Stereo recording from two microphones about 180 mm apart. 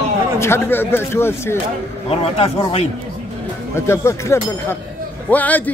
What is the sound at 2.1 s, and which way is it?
Speech, 30° left (ahead or behind).